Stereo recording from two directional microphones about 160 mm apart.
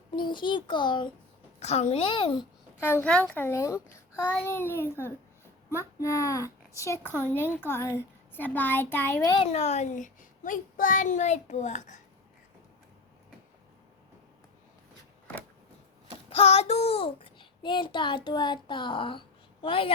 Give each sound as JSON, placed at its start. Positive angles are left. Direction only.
{"t": 0.2, "sound": "speech", "side_deg": 30}
{"t": 1.5, "sound": "a woman's voice", "side_deg": 45}
{"t": 2.8, "sound": "a child's voice", "side_deg": 10}
{"t": 9.4, "sound": "a child's voice", "side_deg": 45}
{"t": 16.3, "sound": "a child's voice", "side_deg": 40}